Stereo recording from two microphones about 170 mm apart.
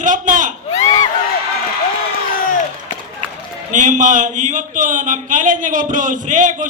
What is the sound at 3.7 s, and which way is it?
Speech, 50° right (ahead or behind).